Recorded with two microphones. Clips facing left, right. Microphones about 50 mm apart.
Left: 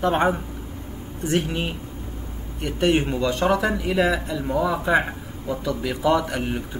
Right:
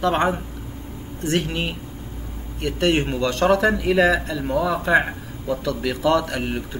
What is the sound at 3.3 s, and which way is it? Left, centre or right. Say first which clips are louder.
Speech: right 5 dB; centre.